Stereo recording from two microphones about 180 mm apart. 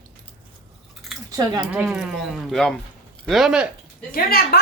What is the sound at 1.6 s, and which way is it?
Speech, 5° right (ahead or behind).